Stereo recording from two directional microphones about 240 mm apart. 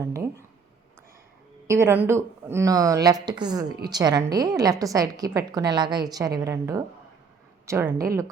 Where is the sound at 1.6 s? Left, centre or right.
Centre.